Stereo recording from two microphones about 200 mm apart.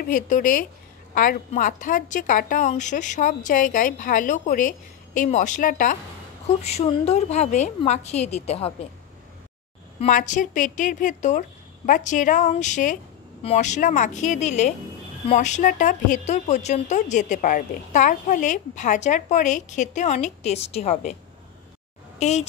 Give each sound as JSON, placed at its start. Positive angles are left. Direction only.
{"t": 0.0, "sound": "a woman's voice", "side_deg": 45}
{"t": 9.9, "sound": "a woman's voice", "side_deg": 40}
{"t": 22.2, "sound": "a woman's voice", "side_deg": 35}